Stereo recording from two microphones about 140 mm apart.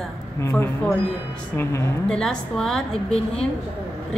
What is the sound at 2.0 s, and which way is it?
Speech, 5° left (ahead or behind).